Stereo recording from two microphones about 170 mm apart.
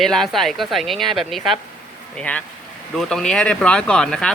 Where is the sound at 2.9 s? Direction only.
5° left (ahead or behind).